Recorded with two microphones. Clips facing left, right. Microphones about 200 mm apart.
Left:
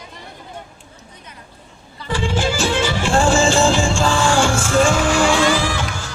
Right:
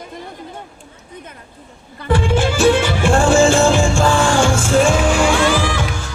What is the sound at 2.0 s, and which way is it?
Music, 55° right (ahead or behind).